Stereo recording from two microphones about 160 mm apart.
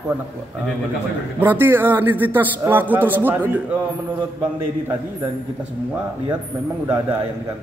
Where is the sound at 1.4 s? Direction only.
15° right (ahead or behind).